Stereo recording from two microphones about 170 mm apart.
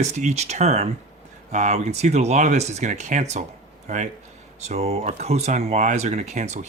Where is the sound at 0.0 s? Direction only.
45° right (ahead or behind).